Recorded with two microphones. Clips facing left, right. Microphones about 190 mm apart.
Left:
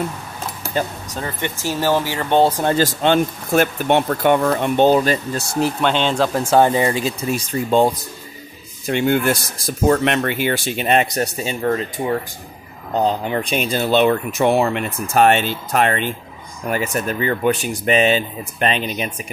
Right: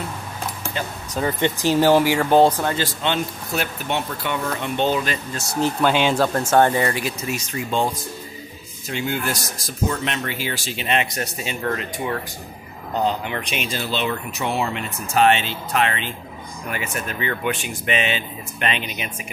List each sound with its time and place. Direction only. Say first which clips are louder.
1.2 s speech: right 5 dB; 20° right (ahead or behind)
2.7 s speech: left 7 dB; 40° left (ahead or behind)
5.8 s speech: right 2 dB; 10° right (ahead or behind)
6.7 s speech: left 4 dB; 25° left (ahead or behind)
8.9 s speech: left 8 dB; 55° left (ahead or behind); by 11.5 s 40° left (ahead or behind)
11.6 s speech: left 5 dB; 20° left (ahead or behind)
13.0 s speech: left 4 dB; 40° left (ahead or behind)
13.8 s speech: left 13 dB; 50° left (ahead or behind)